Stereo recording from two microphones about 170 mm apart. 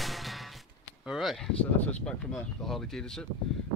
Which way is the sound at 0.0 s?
Centre (ahead or behind).